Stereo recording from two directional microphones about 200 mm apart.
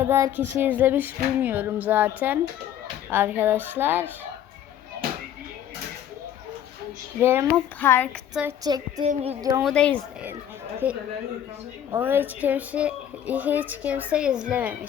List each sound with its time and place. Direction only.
0.0 s speech: 10° right (ahead or behind)
7.2 s speech: 10° right (ahead or behind)
7.8 s speech: 10° left (ahead or behind)
8.3 s a woman's voice: 5° right (ahead or behind)
8.6 s a woman's voice: 20° right (ahead or behind)
9.0 s speech: 30° right (ahead or behind)
9.4 s speech: 15° right (ahead or behind)
9.6 s speech: 5° left (ahead or behind)
10.8 s speech: 10° right (ahead or behind)